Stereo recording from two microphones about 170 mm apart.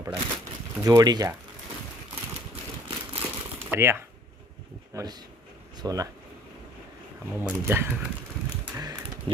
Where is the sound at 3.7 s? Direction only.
15° right (ahead or behind).